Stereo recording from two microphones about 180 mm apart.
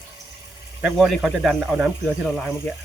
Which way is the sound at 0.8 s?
5° right (ahead or behind).